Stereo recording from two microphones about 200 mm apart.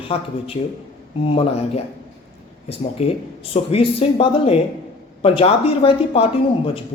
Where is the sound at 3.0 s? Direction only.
30° left (ahead or behind).